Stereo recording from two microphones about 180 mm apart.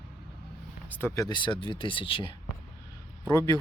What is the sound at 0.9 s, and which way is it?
Speech, 10° left (ahead or behind).